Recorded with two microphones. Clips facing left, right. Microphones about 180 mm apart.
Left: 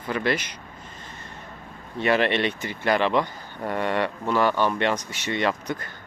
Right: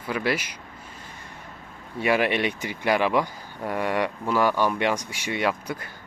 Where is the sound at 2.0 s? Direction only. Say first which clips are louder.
Left 1 dB; 10° right (ahead or behind).